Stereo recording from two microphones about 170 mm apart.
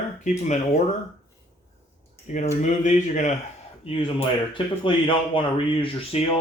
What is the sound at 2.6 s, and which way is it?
Speech, 45° left (ahead or behind).